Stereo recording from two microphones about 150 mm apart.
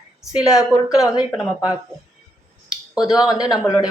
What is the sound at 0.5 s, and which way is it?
Speech, 5° right (ahead or behind).